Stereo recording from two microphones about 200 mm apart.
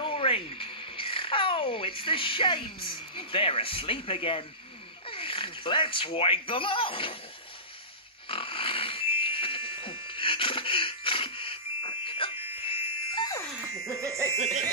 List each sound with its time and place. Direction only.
0.0 s speech: 25° left (ahead or behind)
8.3 s pig: 25° left (ahead or behind)
12.6 s music: 25° left (ahead or behind)
13.8 s music: 15° right (ahead or behind)
14.3 s music: 35° right (ahead or behind)